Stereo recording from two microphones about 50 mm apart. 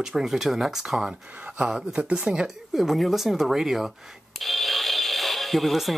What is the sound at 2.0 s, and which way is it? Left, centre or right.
Speech, right.